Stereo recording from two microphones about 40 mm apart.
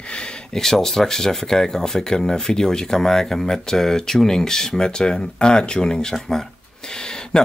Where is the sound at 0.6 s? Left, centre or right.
Centre.